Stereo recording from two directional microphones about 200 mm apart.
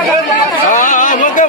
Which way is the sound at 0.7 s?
40° left (ahead or behind).